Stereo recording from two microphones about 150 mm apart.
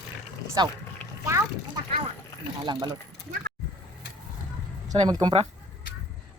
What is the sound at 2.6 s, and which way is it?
Speech, 30° right (ahead or behind).